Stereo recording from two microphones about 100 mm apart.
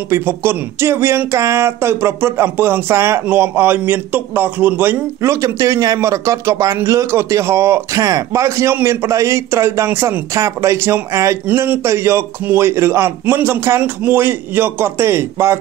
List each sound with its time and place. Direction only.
0.1 s a man's voice: 25° right (ahead or behind)
11.4 s a man's voice: 20° right (ahead or behind)